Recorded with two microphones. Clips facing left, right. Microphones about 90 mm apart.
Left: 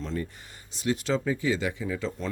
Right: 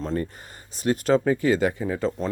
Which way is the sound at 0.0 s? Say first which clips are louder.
Right 5 dB; 45° right (ahead or behind).